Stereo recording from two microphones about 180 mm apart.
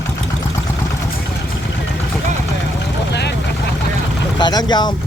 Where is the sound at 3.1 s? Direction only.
70° left (ahead or behind).